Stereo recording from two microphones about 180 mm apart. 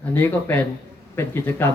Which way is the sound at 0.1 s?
10° left (ahead or behind).